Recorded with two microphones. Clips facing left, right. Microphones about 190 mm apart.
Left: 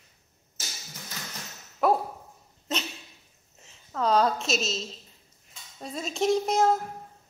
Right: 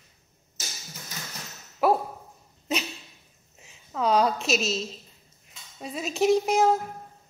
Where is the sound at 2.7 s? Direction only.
10° right (ahead or behind).